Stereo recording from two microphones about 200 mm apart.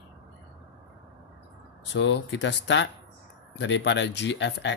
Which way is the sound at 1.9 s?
65° left (ahead or behind).